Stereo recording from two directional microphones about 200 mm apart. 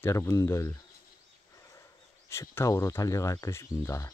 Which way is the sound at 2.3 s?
15° left (ahead or behind).